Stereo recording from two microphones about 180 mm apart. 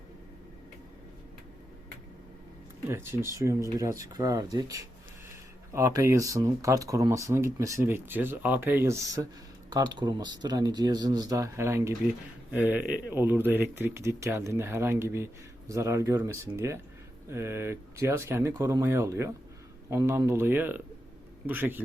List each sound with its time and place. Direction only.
2.9 s speech: 15° right (ahead or behind)